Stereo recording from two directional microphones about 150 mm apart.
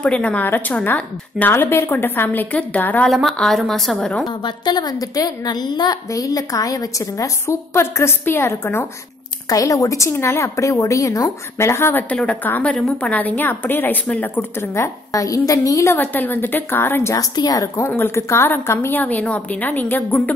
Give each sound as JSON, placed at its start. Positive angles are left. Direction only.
{"t": 0.0, "sound": "a woman's voice", "side_deg": 5}
{"t": 4.6, "sound": "a woman's voice", "side_deg": 25}
{"t": 15.1, "sound": "a woman's voice", "side_deg": 25}